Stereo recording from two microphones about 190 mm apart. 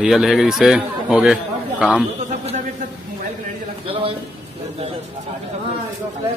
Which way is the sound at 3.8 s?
30° right (ahead or behind).